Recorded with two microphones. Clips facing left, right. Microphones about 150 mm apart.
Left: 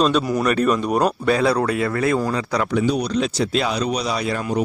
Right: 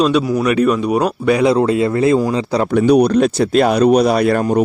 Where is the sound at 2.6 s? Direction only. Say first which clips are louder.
Right 12 dB; 55° right (ahead or behind).